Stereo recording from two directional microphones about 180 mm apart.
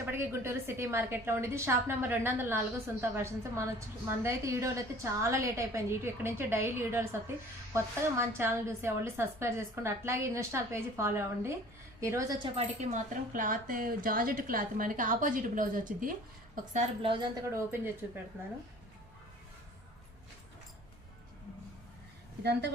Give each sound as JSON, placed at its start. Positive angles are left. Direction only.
{"t": 0.1, "sound": "a woman's voice", "side_deg": -15}
{"t": 12.5, "sound": "speech", "side_deg": -40}
{"t": 17.0, "sound": "a woman's voice", "side_deg": -30}
{"t": 17.5, "sound": "a woman's voice", "side_deg": -15}